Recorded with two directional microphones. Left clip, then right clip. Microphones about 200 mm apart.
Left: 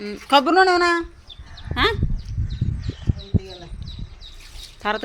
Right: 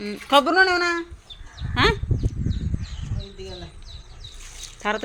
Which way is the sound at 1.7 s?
5° right (ahead or behind).